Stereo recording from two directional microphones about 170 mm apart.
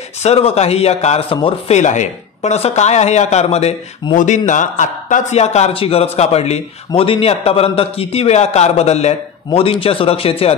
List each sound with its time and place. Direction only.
0.2 s speech: 40° left (ahead or behind)